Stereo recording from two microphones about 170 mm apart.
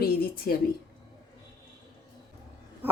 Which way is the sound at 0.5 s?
55° left (ahead or behind).